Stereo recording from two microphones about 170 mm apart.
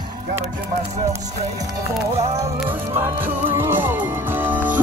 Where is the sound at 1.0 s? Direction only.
20° right (ahead or behind).